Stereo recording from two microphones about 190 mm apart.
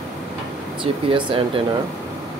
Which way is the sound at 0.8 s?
25° right (ahead or behind).